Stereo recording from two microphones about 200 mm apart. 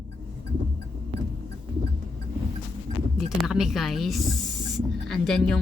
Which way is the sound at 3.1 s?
Centre (ahead or behind).